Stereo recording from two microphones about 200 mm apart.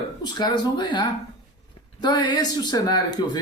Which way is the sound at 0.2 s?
20° left (ahead or behind).